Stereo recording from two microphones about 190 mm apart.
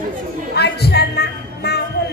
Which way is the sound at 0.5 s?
60° left (ahead or behind).